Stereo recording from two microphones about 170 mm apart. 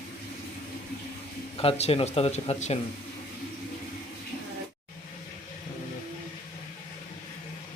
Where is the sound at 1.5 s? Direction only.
35° left (ahead or behind).